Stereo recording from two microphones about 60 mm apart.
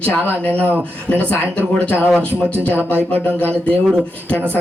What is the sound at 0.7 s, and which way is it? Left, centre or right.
Speech, left.